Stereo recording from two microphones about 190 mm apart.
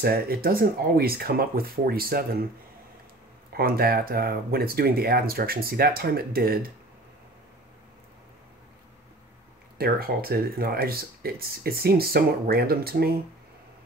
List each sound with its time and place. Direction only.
0.0 s speech: 50° right (ahead or behind)
3.5 s speech: 50° right (ahead or behind)
9.8 s speech: 50° right (ahead or behind)